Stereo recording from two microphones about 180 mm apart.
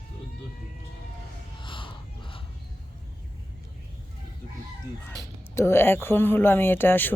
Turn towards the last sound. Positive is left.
turn(degrees=10)  # may be behind; listen again after turning